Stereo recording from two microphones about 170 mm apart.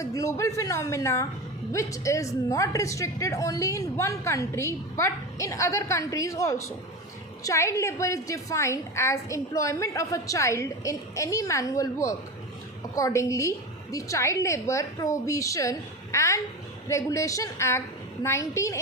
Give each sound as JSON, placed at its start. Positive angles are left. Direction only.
{"t": 0.0, "sound": "a woman's voice", "side_deg": 20}